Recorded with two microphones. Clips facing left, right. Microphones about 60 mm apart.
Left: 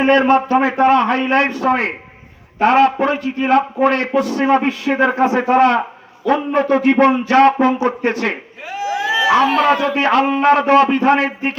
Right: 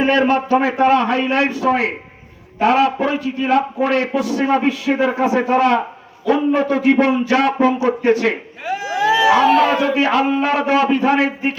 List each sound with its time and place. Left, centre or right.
0.0 s a man's voice: left